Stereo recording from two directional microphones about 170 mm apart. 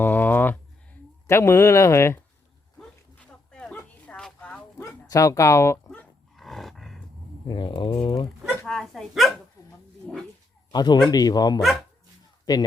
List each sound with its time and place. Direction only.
0.0 s a sound: 10° left (ahead or behind)
1.3 s speech: 15° left (ahead or behind)
3.5 s a sound: 5° left (ahead or behind)
7.4 s speech: 25° left (ahead or behind)
8.6 s speech: 5° left (ahead or behind)
10.7 s speech: 25° left (ahead or behind)